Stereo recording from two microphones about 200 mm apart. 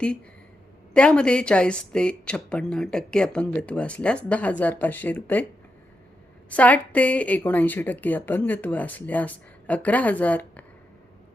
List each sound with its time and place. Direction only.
0.9 s a woman's voice: 5° left (ahead or behind)
6.5 s speech: 5° left (ahead or behind)